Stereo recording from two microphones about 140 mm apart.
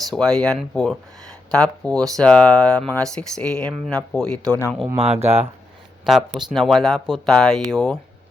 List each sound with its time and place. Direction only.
0.1 s speech: 5° left (ahead or behind)
4.9 s speech: 45° right (ahead or behind)
6.1 s speech: centre (ahead or behind)